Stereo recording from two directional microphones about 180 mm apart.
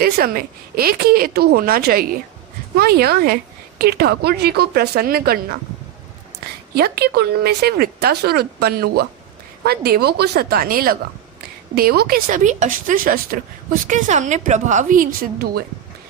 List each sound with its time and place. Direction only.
0.0 s speech: 55° right (ahead or behind)
6.7 s a woman's voice: 60° right (ahead or behind)